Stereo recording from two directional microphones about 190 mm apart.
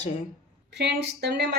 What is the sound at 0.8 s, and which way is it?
Speech, 60° right (ahead or behind).